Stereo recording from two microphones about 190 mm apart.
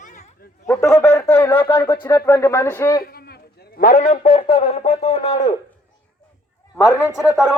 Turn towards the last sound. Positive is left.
turn(degrees=0)  # may be behind; listen again after turning